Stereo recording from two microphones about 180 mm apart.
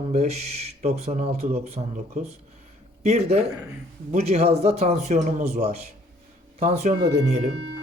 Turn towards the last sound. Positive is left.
turn(degrees=-35)  # may be behind; listen again after turning